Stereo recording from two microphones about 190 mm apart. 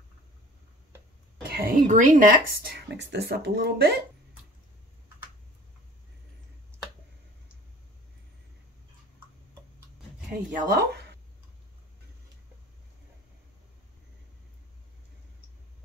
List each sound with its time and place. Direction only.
1.5 s speech: 50° right (ahead or behind)
10.5 s speech: 50° right (ahead or behind)